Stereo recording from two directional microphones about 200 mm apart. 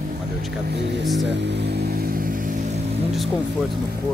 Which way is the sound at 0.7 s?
60° right (ahead or behind).